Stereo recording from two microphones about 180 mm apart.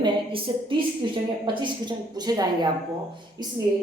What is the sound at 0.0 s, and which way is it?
A woman's voice, 30° right (ahead or behind).